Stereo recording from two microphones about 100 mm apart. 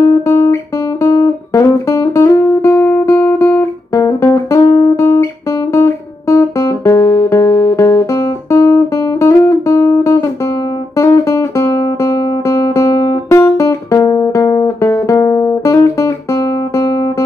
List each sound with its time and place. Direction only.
0.0 s music: 25° left (ahead or behind)
3.9 s music: 30° left (ahead or behind)